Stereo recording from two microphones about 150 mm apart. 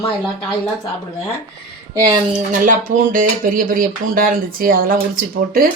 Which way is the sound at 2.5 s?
60° right (ahead or behind).